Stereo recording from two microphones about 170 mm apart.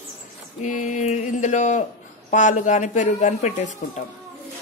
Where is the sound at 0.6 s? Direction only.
45° left (ahead or behind).